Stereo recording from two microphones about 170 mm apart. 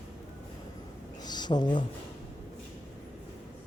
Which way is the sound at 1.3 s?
25° left (ahead or behind).